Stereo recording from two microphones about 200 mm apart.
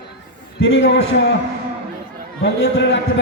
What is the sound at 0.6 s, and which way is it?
Speech, 70° left (ahead or behind).